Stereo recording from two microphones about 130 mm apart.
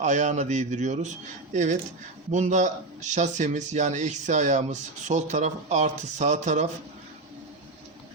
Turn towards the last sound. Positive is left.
turn(degrees=-65)  # may be behind; listen again after turning